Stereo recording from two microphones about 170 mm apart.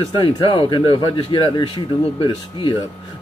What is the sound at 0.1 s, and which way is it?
Speech, 30° left (ahead or behind).